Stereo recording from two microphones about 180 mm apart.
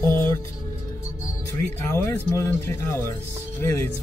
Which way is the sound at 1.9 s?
20° left (ahead or behind).